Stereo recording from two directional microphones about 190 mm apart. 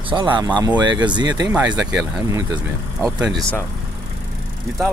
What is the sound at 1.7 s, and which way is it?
Speech, 5° right (ahead or behind).